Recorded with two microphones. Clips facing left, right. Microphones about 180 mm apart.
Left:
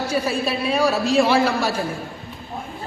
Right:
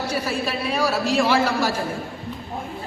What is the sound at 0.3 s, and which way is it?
A man's voice, 15° left (ahead or behind).